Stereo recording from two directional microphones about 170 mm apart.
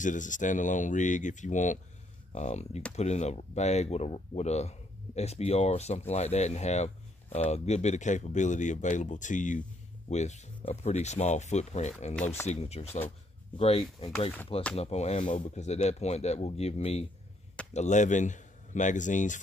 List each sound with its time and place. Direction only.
0.0 s speech: 50° left (ahead or behind)
12.2 s speech: 15° left (ahead or behind)
12.4 s speech: 40° left (ahead or behind)